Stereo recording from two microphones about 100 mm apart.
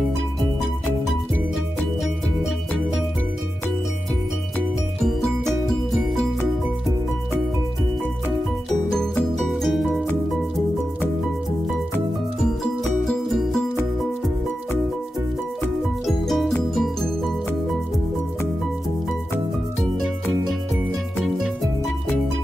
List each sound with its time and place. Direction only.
5.0 s music: 5° left (ahead or behind)
9.4 s music: centre (ahead or behind)
12.4 s music: 5° left (ahead or behind)
16.1 s music: centre (ahead or behind)
19.8 s music: centre (ahead or behind)